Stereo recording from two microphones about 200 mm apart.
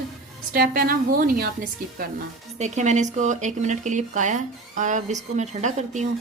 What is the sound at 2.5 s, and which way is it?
Speech, 35° right (ahead or behind).